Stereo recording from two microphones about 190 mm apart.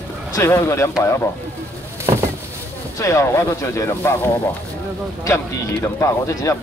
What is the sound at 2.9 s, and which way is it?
Speech, 15° left (ahead or behind).